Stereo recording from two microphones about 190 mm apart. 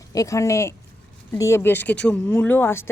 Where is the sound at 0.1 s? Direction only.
15° left (ahead or behind).